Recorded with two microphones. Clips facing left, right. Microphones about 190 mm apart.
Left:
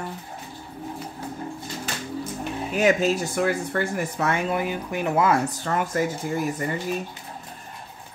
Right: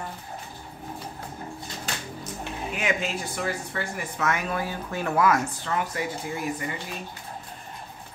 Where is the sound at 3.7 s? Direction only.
55° left (ahead or behind).